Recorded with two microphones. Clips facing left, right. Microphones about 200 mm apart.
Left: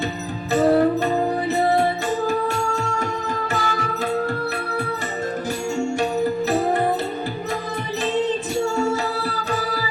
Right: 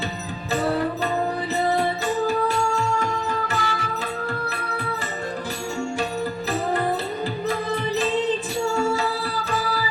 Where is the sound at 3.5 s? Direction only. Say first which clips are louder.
Left 3 dB; 40° left (ahead or behind).